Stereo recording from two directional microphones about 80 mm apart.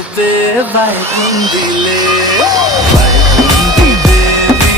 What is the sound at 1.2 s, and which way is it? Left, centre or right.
Speech, right.